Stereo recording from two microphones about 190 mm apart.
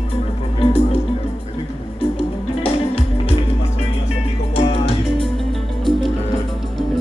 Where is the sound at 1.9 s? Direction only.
30° left (ahead or behind).